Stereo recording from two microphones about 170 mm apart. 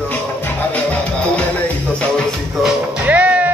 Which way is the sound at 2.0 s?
Centre (ahead or behind).